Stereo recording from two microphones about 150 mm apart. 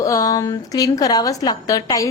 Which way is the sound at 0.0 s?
20° left (ahead or behind).